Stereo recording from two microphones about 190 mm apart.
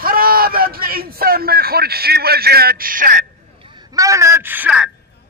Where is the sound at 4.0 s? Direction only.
15° right (ahead or behind).